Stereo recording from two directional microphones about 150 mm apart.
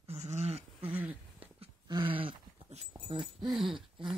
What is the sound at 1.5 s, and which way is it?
Dog, 30° right (ahead or behind).